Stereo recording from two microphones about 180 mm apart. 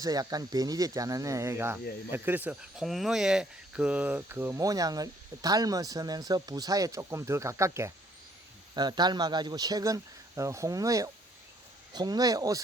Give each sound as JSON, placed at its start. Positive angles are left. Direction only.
{"t": 0.0, "sound": "speech", "side_deg": -20}